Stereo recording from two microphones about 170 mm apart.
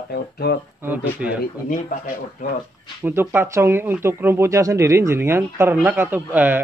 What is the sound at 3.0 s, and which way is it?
Speech, 10° right (ahead or behind).